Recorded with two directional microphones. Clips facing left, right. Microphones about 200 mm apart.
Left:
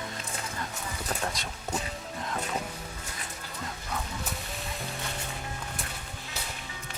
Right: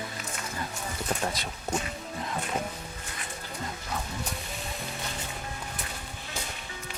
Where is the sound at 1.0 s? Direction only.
Centre (ahead or behind).